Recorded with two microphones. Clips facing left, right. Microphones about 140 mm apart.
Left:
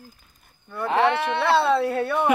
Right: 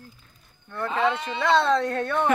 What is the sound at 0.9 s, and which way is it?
Speech, 65° left (ahead or behind).